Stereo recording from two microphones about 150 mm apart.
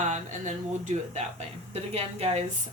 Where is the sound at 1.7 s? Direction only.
45° right (ahead or behind).